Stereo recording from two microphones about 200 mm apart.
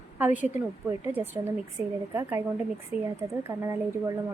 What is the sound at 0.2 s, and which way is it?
Speech, 10° right (ahead or behind).